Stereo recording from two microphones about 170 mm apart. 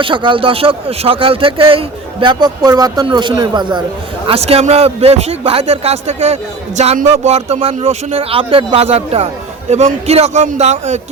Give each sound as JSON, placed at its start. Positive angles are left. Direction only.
{"t": 0.0, "sound": "speech", "side_deg": -30}
{"t": 4.3, "sound": "speech", "side_deg": -35}